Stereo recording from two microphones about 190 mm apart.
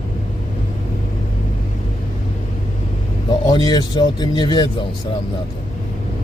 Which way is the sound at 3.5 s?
20° left (ahead or behind).